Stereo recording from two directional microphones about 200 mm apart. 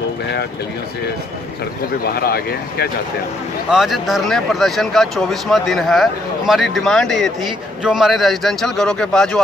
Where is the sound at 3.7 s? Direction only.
Centre (ahead or behind).